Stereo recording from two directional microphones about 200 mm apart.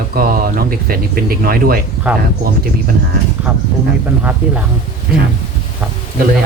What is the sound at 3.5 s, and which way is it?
Speech, 10° right (ahead or behind).